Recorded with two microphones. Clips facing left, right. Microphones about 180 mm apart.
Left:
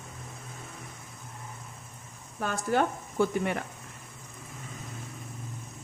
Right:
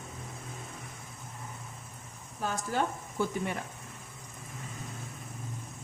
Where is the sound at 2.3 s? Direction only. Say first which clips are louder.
Left 4 dB; 65° left (ahead or behind).